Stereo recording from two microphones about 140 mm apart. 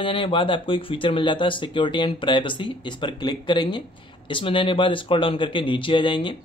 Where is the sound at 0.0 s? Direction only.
40° left (ahead or behind).